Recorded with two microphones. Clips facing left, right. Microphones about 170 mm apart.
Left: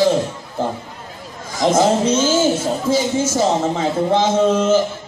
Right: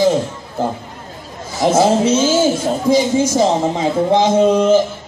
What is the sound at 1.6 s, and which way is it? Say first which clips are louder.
A man's voice: right 2 dB; 10° right (ahead or behind).